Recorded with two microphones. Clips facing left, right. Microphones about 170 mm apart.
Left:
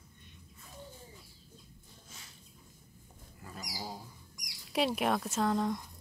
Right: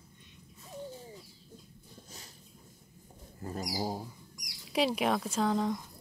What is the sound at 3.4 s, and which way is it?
Bird, 40° right (ahead or behind).